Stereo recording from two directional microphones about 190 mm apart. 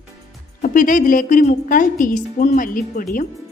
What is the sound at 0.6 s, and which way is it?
A woman's voice, 45° left (ahead or behind).